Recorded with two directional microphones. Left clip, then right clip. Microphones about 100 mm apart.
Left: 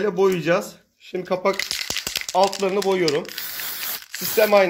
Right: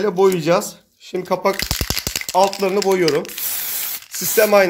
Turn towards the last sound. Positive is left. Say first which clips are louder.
# right 3 dB
turn(degrees=-20)  # may be behind; listen again after turning